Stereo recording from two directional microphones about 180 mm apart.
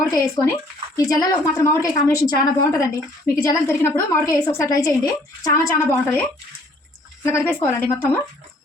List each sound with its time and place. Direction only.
0.1 s a woman's voice: 20° left (ahead or behind)
7.3 s a woman's voice: 15° left (ahead or behind)